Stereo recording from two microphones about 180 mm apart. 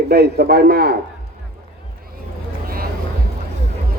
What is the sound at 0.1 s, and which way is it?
Speech, 60° right (ahead or behind).